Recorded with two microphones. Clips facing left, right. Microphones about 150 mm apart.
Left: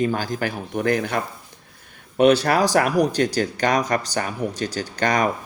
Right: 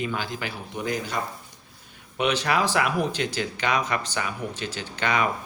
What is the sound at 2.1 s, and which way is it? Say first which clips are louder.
Speech: left 8 dB; 45° left (ahead or behind).